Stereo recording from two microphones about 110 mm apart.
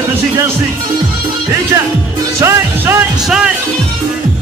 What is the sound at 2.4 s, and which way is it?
Music, 25° right (ahead or behind).